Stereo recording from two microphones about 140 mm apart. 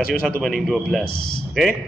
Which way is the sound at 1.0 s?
90° left.